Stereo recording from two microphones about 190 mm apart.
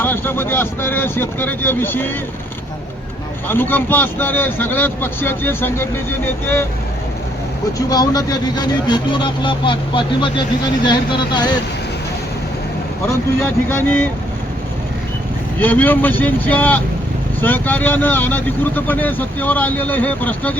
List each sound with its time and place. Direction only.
0.0 s speech: 10° left (ahead or behind)
3.5 s speech: 10° left (ahead or behind)
7.9 s speech: 20° left (ahead or behind)
13.4 s speech: 10° left (ahead or behind)
15.5 s speech: 10° left (ahead or behind)